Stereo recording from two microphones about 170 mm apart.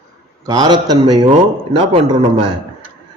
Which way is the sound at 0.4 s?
25° right (ahead or behind).